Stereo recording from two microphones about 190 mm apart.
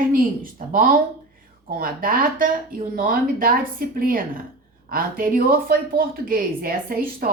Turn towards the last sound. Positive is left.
turn(degrees=-50)  # may be behind; listen again after turning